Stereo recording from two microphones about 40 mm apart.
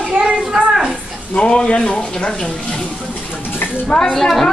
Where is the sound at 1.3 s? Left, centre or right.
Left.